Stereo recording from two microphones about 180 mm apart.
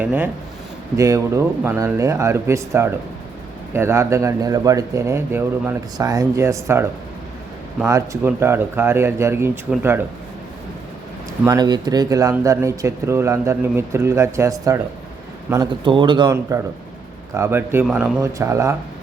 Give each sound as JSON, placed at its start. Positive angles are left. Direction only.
{"t": 0.0, "sound": "speech", "side_deg": -10}
{"t": 7.9, "sound": "speech", "side_deg": -20}
{"t": 11.4, "sound": "speech", "side_deg": -20}
{"t": 18.2, "sound": "speech", "side_deg": -15}